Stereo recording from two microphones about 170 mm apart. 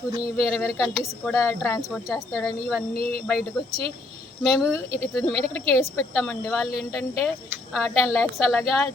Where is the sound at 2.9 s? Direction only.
60° left (ahead or behind).